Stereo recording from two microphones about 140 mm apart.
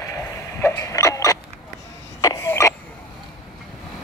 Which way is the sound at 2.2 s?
25° left (ahead or behind).